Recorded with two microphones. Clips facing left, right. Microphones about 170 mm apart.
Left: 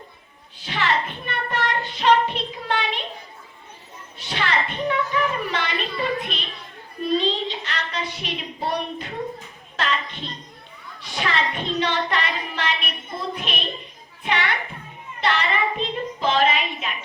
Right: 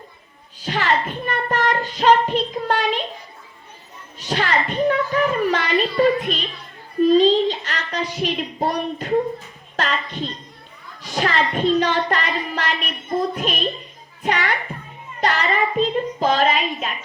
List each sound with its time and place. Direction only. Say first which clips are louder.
0.6 s speech: right 3 dB; 45° right (ahead or behind)
4.2 s a woman's voice: right 4 dB; 45° right (ahead or behind)
11.0 s children playing: right 4 dB; 40° right (ahead or behind)
11.5 s a woman's voice: right 6 dB; 45° right (ahead or behind)